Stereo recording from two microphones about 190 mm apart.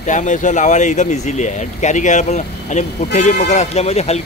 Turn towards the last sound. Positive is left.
turn(degrees=35)  # may be behind; listen again after turning